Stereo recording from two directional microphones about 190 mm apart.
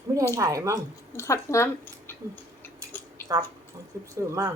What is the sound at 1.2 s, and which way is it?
Speech, 15° left (ahead or behind).